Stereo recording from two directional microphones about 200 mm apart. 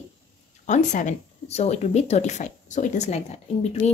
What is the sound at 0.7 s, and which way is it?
Speech, 40° left (ahead or behind).